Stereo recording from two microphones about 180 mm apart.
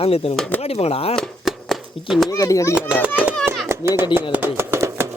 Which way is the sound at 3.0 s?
5° right (ahead or behind).